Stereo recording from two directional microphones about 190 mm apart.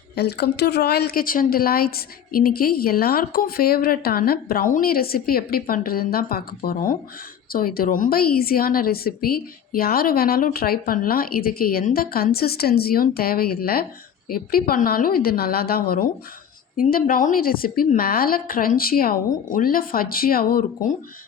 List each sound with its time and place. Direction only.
0.2 s a woman's voice: 60° left (ahead or behind)